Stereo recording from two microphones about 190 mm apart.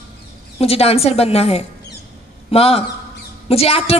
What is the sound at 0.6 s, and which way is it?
A woman's voice, 30° left (ahead or behind).